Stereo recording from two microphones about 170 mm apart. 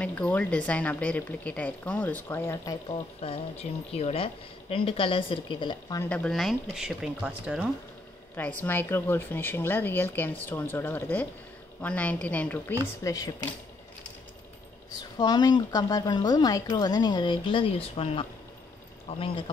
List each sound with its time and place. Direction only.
0.0 s speech: 10° left (ahead or behind)
2.9 s speech: 35° left (ahead or behind)
6.0 s speech: 5° left (ahead or behind)
8.4 s speech: 10° left (ahead or behind)
13.0 s speech: 20° left (ahead or behind)
15.0 s speech: 25° left (ahead or behind)